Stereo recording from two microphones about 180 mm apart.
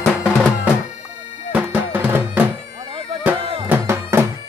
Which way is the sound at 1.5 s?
10° right (ahead or behind).